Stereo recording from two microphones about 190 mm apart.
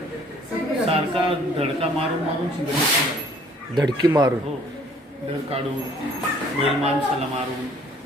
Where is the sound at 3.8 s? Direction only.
20° right (ahead or behind).